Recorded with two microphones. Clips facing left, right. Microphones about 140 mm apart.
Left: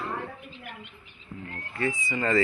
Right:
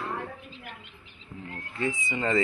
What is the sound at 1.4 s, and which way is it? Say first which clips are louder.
Speech: left 1 dB; 15° right (ahead or behind).